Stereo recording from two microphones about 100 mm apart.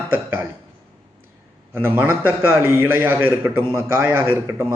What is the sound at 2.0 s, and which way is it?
A man's voice, 20° right (ahead or behind).